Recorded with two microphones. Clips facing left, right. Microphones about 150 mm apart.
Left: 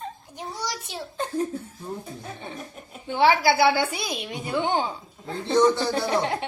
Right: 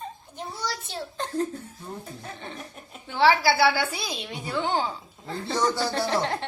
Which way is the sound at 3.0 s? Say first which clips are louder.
Left 1 dB; 15° left (ahead or behind).